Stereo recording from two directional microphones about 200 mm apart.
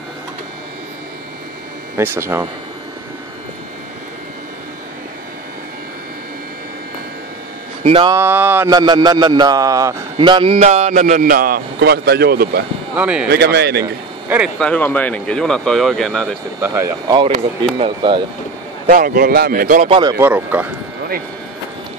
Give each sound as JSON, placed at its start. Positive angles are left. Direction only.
{"t": 2.0, "sound": "speech", "side_deg": -10}
{"t": 7.8, "sound": "a man's voice", "side_deg": -25}
{"t": 8.2, "sound": "a man's voice", "side_deg": -10}
{"t": 12.9, "sound": "speech", "side_deg": -5}
{"t": 13.3, "sound": "speech", "side_deg": -55}
{"t": 14.6, "sound": "speech", "side_deg": 5}
{"t": 16.6, "sound": "a man's voice", "side_deg": -15}
{"t": 18.9, "sound": "speech", "side_deg": -45}
{"t": 19.9, "sound": "speech", "side_deg": -20}